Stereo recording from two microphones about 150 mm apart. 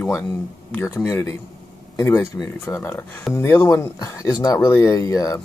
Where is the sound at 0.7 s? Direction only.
15° left (ahead or behind).